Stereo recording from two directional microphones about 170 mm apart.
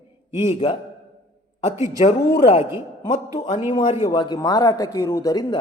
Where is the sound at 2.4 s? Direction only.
35° left (ahead or behind).